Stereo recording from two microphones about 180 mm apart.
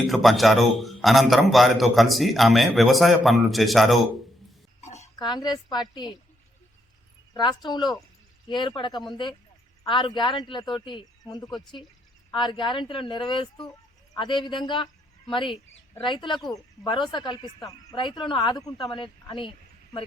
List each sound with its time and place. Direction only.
0.0 s a man's voice: centre (ahead or behind)
4.8 s a sound: 40° left (ahead or behind)
5.2 s speech: 25° left (ahead or behind)
7.3 s speech: 25° left (ahead or behind)